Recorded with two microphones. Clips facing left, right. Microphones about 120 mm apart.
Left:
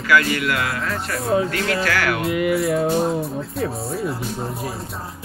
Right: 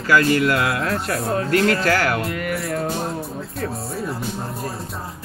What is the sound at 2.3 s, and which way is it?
Music, 10° left (ahead or behind).